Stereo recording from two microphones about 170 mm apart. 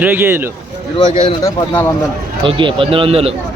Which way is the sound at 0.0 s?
10° right (ahead or behind).